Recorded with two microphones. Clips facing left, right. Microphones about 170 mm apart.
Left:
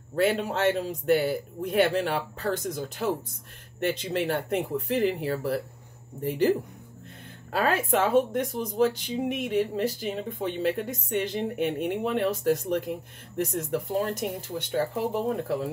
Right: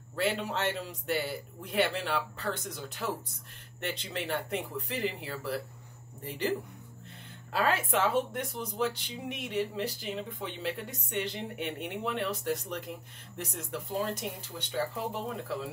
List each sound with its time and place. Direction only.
0.1 s speech: 50° left (ahead or behind)
7.5 s speech: 45° left (ahead or behind)